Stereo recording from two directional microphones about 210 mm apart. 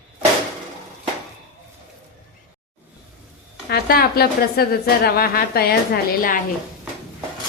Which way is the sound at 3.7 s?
45° left (ahead or behind).